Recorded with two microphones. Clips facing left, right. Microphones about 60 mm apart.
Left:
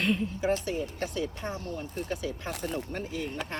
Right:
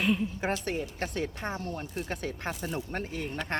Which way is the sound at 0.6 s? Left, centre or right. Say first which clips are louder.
Left 1 dB; right.